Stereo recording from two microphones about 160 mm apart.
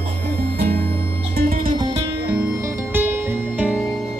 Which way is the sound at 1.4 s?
60° right (ahead or behind).